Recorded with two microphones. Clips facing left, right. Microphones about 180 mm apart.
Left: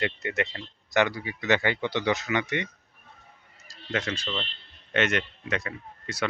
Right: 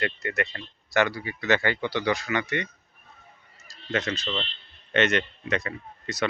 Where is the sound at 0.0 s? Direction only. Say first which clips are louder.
Even; 20° left (ahead or behind).